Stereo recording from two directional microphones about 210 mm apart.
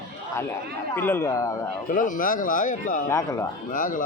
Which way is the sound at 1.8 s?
40° left (ahead or behind).